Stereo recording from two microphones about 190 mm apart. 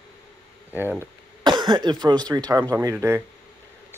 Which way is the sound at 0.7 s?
10° right (ahead or behind).